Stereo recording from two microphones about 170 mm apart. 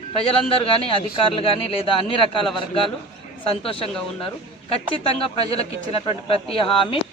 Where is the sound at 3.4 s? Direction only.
30° left (ahead or behind).